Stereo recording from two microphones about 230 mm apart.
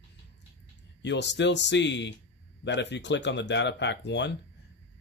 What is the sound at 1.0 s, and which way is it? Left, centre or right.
Speech, left.